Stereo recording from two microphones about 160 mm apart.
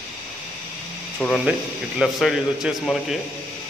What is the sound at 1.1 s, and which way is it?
A man's voice, 5° left (ahead or behind).